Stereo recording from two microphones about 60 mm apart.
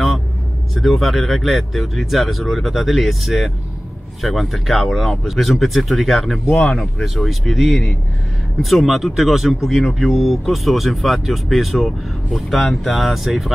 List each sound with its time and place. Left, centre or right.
0.7 s speech: centre